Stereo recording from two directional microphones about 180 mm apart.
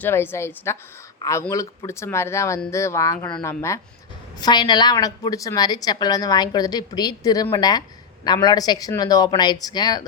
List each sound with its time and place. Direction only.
0.0 s a woman's voice: 10° left (ahead or behind)